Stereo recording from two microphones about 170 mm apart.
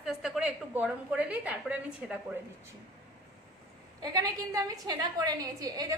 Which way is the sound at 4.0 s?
20° right (ahead or behind).